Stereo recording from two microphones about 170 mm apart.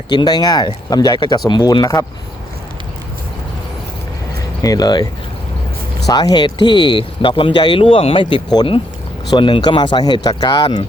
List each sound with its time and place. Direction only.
0.1 s speech: 25° left (ahead or behind)
4.6 s speech: 20° left (ahead or behind)
6.1 s speech: 25° left (ahead or behind)